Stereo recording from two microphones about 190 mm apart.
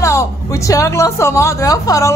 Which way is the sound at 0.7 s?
15° left (ahead or behind).